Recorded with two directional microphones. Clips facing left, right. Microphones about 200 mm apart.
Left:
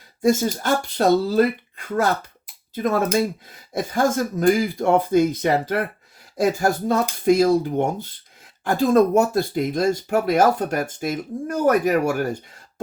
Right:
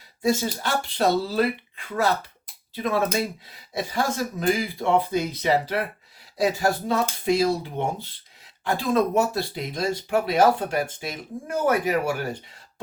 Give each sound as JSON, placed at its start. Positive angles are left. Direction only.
{"t": 0.2, "sound": "speech", "side_deg": 45}